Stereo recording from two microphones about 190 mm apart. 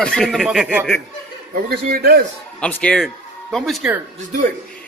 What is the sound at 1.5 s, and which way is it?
Speech, 55° right (ahead or behind).